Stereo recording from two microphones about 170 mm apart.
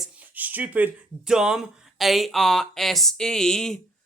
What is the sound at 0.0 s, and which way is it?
Speech, 10° right (ahead or behind).